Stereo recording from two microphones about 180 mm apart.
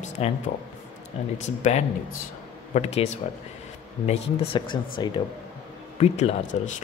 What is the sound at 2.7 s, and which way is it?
Speech, 35° left (ahead or behind).